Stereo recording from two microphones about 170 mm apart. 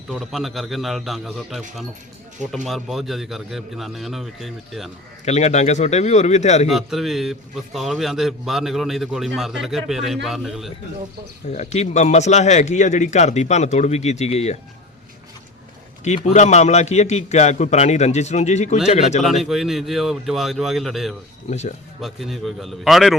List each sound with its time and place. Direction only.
0.1 s a man's voice: centre (ahead or behind)
2.6 s a man's voice: centre (ahead or behind)
5.2 s a man's voice: 40° left (ahead or behind)
6.7 s a man's voice: centre (ahead or behind)
11.5 s a man's voice: 40° left (ahead or behind)
16.0 s a man's voice: 45° left (ahead or behind)
19.2 s a man's voice: centre (ahead or behind)
21.5 s a man's voice: 40° left (ahead or behind)
22.0 s a man's voice: centre (ahead or behind)